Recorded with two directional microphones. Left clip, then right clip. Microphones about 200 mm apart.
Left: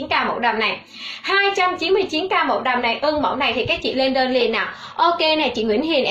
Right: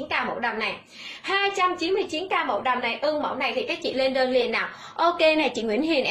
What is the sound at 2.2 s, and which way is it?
A woman's voice, 15° right (ahead or behind).